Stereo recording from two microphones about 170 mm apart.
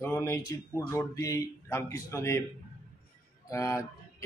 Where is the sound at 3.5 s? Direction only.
20° left (ahead or behind).